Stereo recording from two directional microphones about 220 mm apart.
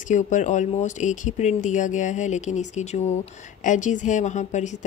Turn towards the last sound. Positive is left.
turn(degrees=35)  # may be behind; listen again after turning